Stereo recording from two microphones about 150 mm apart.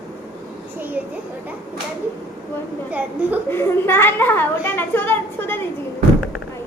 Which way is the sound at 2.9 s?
10° right (ahead or behind).